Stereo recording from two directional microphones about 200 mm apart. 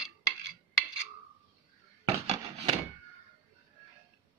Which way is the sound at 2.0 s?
35° right (ahead or behind).